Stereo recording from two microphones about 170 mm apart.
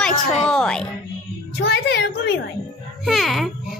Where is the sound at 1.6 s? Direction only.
75° left (ahead or behind).